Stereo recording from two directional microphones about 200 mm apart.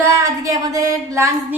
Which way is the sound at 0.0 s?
15° right (ahead or behind).